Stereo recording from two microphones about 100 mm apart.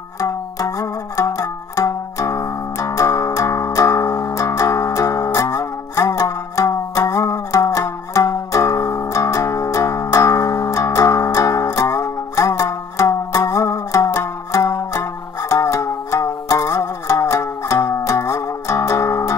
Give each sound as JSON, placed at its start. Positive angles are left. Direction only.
{"t": 0.2, "sound": "music", "side_deg": 35}